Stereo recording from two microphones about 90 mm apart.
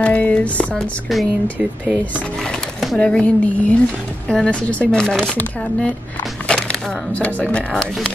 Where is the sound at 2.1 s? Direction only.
10° left (ahead or behind).